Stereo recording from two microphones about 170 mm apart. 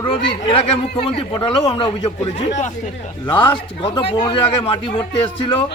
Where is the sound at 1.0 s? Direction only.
35° left (ahead or behind).